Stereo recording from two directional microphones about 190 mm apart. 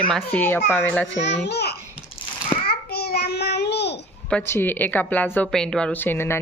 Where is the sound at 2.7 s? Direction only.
55° left (ahead or behind).